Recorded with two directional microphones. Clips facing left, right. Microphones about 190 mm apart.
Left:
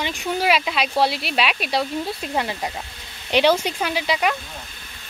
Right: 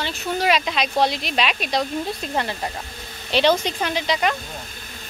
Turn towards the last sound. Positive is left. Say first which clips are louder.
# even
turn(degrees=5)  # may be behind; listen again after turning